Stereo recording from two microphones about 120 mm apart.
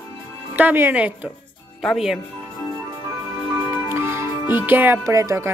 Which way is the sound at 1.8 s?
Centre (ahead or behind).